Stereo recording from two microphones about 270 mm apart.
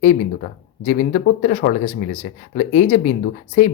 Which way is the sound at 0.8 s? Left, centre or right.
Left.